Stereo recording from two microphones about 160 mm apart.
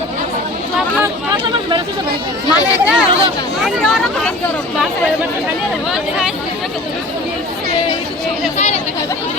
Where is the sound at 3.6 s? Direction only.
Centre (ahead or behind).